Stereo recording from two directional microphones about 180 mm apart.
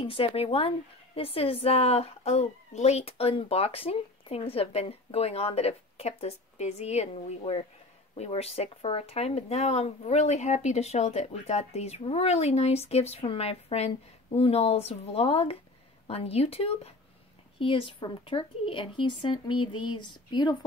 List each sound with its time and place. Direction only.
0.0 s speech: 30° left (ahead or behind)